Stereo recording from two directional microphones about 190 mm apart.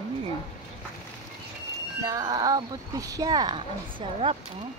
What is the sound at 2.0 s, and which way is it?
Speech, 20° right (ahead or behind).